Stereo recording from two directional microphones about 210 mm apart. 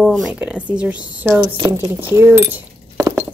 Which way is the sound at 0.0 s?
Centre (ahead or behind).